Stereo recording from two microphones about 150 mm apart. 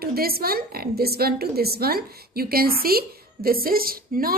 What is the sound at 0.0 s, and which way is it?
A woman's voice, 90° right.